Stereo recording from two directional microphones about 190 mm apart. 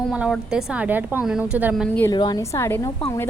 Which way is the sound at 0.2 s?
5° right (ahead or behind).